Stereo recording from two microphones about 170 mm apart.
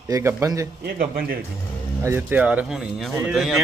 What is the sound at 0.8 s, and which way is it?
Speech, 60° right (ahead or behind).